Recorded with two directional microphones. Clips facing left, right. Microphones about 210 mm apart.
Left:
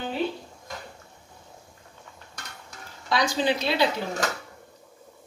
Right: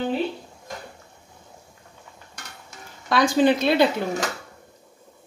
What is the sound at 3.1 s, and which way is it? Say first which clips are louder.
Speech: right 6 dB; 55° right (ahead or behind).